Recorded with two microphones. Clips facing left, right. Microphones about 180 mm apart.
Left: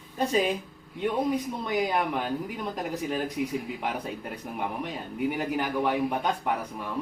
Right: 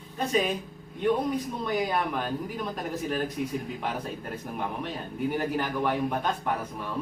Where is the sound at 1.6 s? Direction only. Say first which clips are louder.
Left 1 dB; 15° left (ahead or behind).